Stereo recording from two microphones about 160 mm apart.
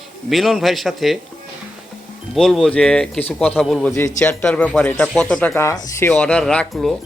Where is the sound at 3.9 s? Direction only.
15° left (ahead or behind).